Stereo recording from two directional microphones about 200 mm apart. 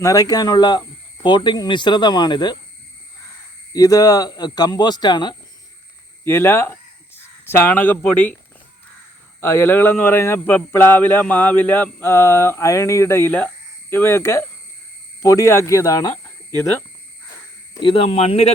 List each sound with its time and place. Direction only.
0.0 s speech: 20° left (ahead or behind)
3.7 s speech: 15° left (ahead or behind)
9.4 s speech: 10° left (ahead or behind)
17.7 s speech: 25° left (ahead or behind)